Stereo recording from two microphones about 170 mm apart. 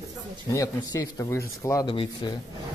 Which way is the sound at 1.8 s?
30° left (ahead or behind).